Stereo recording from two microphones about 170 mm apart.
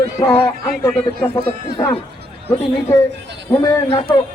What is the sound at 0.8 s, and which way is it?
Speech, 5° left (ahead or behind).